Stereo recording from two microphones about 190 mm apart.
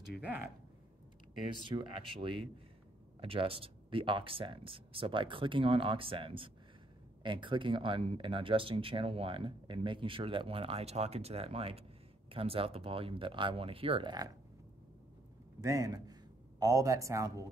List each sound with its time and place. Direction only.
0.2 s speech: 10° right (ahead or behind)
1.8 s speech: 25° right (ahead or behind)
15.6 s a man's voice: 15° right (ahead or behind)